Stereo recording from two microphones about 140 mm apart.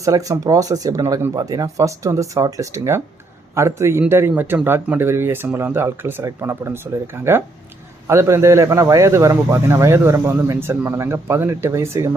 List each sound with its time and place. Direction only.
0.0 s a man's voice: 25° right (ahead or behind)
8.0 s a man's voice: 20° right (ahead or behind)